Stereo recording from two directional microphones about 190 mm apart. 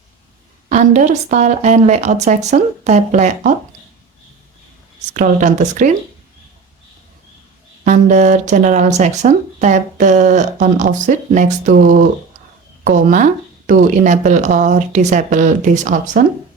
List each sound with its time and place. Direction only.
0.7 s speech: 40° right (ahead or behind)
5.1 s speech: 40° right (ahead or behind)
7.9 s speech: 40° right (ahead or behind)